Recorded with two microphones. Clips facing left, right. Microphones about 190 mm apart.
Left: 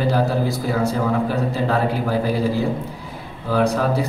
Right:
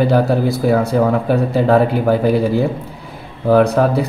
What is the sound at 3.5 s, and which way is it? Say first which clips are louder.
Speech: right 7 dB; 60° right (ahead or behind).